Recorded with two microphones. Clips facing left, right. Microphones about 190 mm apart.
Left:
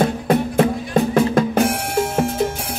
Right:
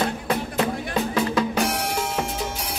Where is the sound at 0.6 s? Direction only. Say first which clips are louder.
Left 7 dB; 50° left (ahead or behind).